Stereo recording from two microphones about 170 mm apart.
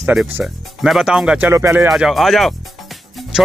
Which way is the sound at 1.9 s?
Centre (ahead or behind).